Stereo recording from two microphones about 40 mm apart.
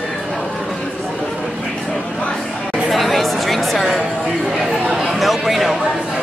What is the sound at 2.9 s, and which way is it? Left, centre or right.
Music, centre.